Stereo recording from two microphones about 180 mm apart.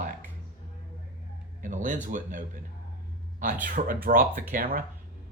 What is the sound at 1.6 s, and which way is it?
Speech, 45° right (ahead or behind).